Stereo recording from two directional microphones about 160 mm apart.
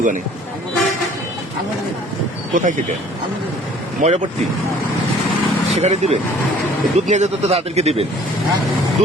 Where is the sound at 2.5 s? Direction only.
55° right (ahead or behind).